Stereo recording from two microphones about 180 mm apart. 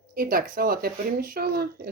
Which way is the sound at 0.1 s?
55° right (ahead or behind).